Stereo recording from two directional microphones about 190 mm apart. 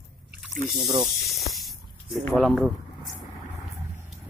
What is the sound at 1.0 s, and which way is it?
Snake, centre (ahead or behind).